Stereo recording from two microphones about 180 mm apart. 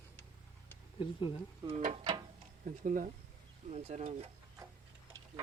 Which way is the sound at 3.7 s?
40° right (ahead or behind).